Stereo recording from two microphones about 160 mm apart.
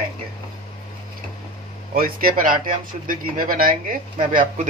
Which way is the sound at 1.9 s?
65° right (ahead or behind).